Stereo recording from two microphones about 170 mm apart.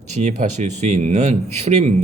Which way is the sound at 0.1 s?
40° right (ahead or behind).